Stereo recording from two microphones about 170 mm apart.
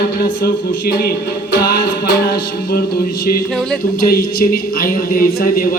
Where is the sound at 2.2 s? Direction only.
65° left (ahead or behind).